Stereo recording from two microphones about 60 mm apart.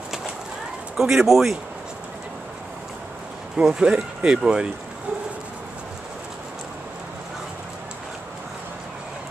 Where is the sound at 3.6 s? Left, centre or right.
Centre.